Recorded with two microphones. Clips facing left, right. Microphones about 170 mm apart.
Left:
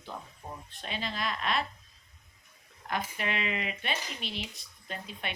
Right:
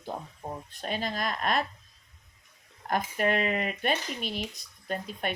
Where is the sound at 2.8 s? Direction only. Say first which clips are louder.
Right 6 dB; 45° right (ahead or behind).